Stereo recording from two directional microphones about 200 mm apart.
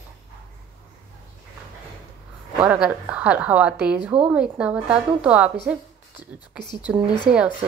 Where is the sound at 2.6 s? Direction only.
5° right (ahead or behind).